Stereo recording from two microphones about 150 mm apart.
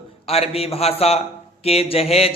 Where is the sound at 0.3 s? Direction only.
40° left (ahead or behind).